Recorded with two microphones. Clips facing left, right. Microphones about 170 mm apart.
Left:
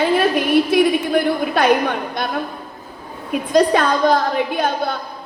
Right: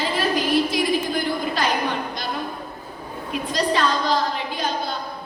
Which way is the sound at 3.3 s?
50° left (ahead or behind).